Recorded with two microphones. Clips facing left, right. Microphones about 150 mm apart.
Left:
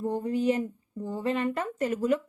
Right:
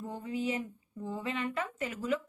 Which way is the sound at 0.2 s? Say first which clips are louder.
Left 6 dB; 40° left (ahead or behind).